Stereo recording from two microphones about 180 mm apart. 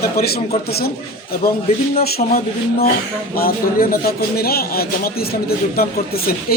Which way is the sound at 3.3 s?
55° left (ahead or behind).